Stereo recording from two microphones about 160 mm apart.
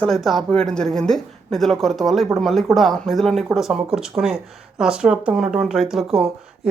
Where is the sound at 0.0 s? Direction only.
Centre (ahead or behind).